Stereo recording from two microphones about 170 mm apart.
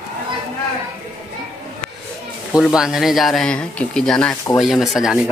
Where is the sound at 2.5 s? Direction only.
5° right (ahead or behind).